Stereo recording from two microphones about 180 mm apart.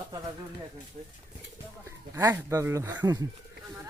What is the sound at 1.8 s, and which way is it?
A man's voice, 15° right (ahead or behind).